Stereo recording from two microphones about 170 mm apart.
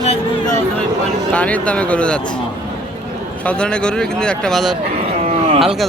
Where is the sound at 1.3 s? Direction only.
10° left (ahead or behind).